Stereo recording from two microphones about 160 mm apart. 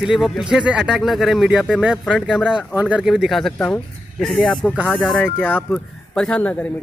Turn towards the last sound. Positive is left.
turn(degrees=10)  # may be behind; listen again after turning